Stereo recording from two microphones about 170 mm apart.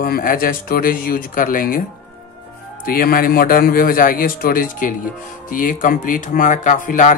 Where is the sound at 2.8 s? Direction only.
60° left (ahead or behind).